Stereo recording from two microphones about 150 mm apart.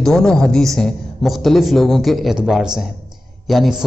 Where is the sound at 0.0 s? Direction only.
5° left (ahead or behind).